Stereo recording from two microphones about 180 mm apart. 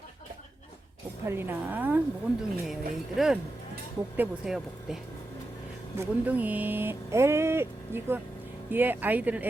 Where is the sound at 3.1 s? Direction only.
5° right (ahead or behind).